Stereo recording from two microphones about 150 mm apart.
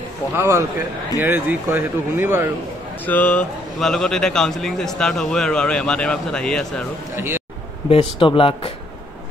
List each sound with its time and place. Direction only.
0.4 s a man's voice: 20° right (ahead or behind)
3.1 s a man's voice: 10° left (ahead or behind)
7.2 s speech: 15° right (ahead or behind)
7.9 s speech: 35° left (ahead or behind)